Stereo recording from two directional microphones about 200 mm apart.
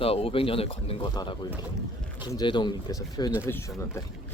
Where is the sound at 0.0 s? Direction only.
30° left (ahead or behind).